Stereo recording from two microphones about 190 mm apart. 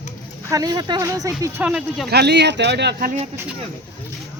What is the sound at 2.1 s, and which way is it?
Speech, 60° right (ahead or behind).